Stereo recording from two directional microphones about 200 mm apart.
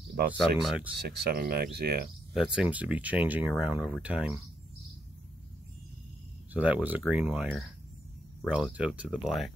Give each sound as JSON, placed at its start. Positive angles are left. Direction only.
{"t": 0.6, "sound": "speech", "side_deg": 0}
{"t": 0.9, "sound": "speech", "side_deg": -55}
{"t": 2.3, "sound": "speech", "side_deg": -5}
{"t": 6.5, "sound": "speech", "side_deg": -5}